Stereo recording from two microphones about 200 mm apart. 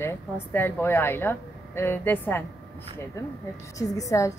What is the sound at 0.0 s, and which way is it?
A woman's voice, 10° left (ahead or behind).